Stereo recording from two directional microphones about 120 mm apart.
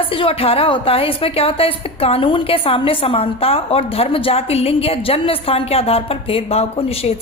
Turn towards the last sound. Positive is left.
turn(degrees=55)  # may be behind; listen again after turning